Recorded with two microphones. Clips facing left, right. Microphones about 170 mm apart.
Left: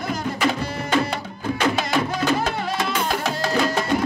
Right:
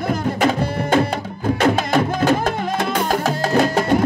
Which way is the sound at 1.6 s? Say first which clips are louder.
Right 4 dB; 50° right (ahead or behind).